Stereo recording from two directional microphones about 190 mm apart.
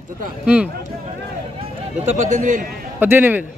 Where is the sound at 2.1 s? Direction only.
40° right (ahead or behind).